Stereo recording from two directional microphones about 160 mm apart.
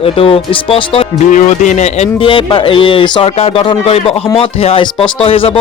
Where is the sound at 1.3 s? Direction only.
50° left (ahead or behind).